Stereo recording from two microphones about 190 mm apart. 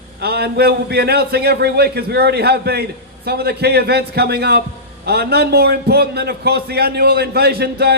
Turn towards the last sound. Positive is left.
turn(degrees=-60)  # may be behind; listen again after turning